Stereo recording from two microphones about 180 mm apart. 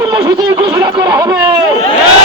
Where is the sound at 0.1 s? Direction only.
20° right (ahead or behind).